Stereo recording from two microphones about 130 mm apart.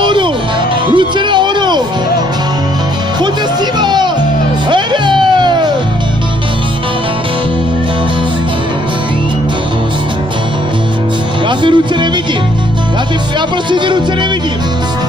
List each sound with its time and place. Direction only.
0.0 s music: 35° right (ahead or behind)
3.8 s music: 35° right (ahead or behind)
11.4 s music: 35° right (ahead or behind)
13.7 s music: 35° right (ahead or behind)